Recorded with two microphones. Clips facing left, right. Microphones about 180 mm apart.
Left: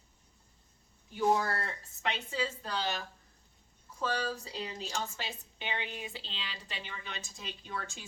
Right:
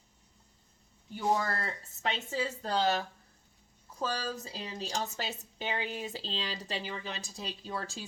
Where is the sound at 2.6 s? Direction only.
40° right (ahead or behind).